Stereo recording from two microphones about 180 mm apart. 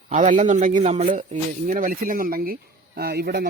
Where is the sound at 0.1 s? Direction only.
45° right (ahead or behind).